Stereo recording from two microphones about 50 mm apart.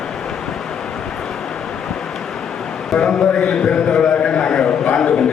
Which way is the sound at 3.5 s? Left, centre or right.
Centre.